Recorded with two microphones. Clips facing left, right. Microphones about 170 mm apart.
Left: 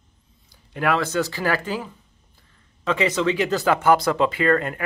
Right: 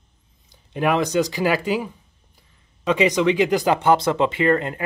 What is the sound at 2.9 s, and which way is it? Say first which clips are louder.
Speech: right 3 dB; 15° right (ahead or behind).